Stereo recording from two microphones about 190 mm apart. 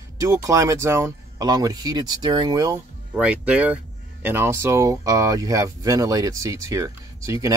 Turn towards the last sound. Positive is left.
turn(degrees=-15)  # may be behind; listen again after turning